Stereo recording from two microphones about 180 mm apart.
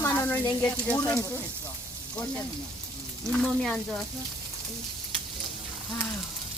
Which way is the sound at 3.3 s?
Centre (ahead or behind).